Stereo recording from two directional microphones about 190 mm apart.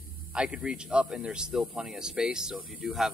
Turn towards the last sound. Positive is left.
turn(degrees=0)  # may be behind; listen again after turning